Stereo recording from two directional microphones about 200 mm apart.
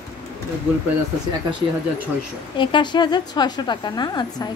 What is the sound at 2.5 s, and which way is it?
A woman's voice, 25° left (ahead or behind).